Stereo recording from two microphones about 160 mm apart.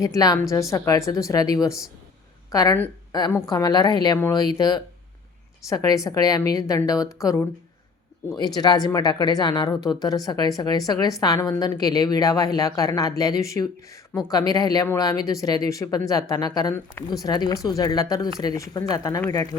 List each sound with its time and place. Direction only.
0.0 s a woman's voice: 20° left (ahead or behind)
8.4 s speech: 25° left (ahead or behind)